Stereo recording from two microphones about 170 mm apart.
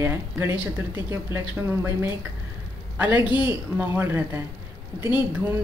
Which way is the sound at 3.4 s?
10° right (ahead or behind).